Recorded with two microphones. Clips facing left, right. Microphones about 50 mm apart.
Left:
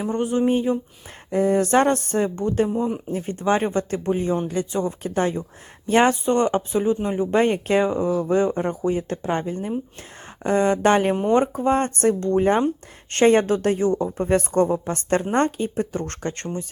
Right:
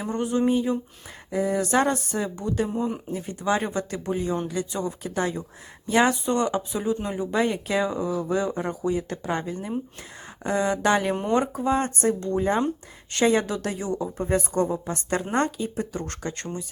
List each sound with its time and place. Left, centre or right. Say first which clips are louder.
0.0 s speech: left 3 dB; left
1.3 s speech: left 5 dB; left
7.3 s speech: left 5 dB; left
10.4 s speech: left 5 dB; left
11.9 s speech: left 5 dB; left
15.2 s speech: left 4 dB; left